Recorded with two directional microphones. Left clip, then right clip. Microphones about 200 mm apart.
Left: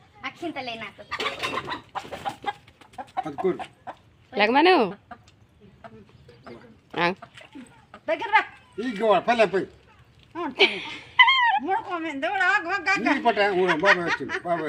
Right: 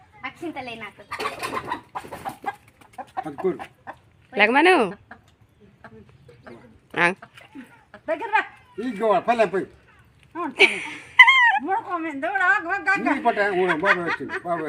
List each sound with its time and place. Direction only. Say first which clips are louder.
0.3 s a woman's voice: left 1 dB; 10° left (ahead or behind)
1.1 s chicken: even; 50° right (ahead or behind)
4.4 s speech: right 2 dB; centre (ahead or behind)
6.9 s speech: right 4 dB; 5° right (ahead or behind)